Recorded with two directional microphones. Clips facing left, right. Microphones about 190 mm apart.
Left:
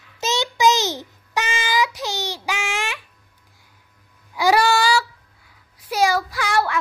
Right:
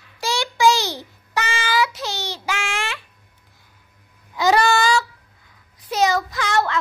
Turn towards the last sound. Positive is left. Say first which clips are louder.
# even
turn(degrees=10)  # may be behind; listen again after turning